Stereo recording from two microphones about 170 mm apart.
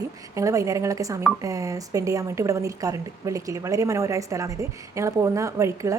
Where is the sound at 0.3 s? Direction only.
20° right (ahead or behind).